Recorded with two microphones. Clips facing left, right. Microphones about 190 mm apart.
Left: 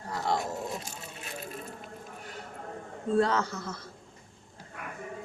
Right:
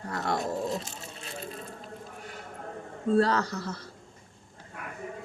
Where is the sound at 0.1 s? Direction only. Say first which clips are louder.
Even; 60° right (ahead or behind).